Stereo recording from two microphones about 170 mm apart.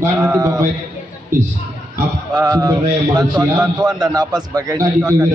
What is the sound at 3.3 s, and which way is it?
Speech, 10° right (ahead or behind).